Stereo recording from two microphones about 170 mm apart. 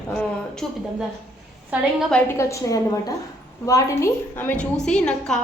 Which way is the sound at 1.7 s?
10° right (ahead or behind).